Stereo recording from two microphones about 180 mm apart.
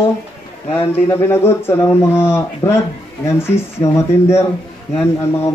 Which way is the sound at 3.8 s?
15° left (ahead or behind).